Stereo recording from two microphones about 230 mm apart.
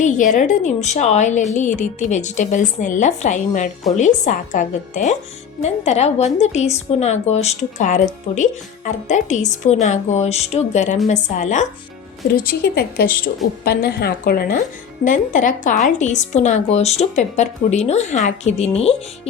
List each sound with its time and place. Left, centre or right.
0.0 s a woman's voice: left